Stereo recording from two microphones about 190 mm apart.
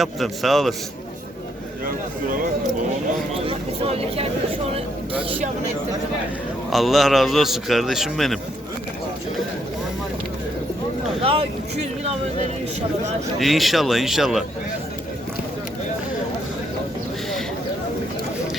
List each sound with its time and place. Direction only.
0.0 s a man's voice: centre (ahead or behind)
3.4 s speech: 30° right (ahead or behind)
6.7 s a man's voice: centre (ahead or behind)
11.2 s speech: 30° right (ahead or behind)
13.4 s a man's voice: centre (ahead or behind)